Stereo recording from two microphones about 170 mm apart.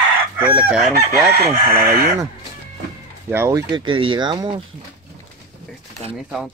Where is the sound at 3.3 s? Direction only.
15° right (ahead or behind).